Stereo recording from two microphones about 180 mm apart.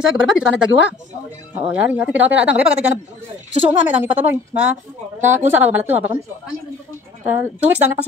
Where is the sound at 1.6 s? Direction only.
10° right (ahead or behind).